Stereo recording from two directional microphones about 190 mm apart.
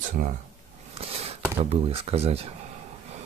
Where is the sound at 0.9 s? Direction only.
30° right (ahead or behind).